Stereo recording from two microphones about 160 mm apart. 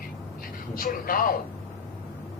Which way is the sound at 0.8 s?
60° left (ahead or behind).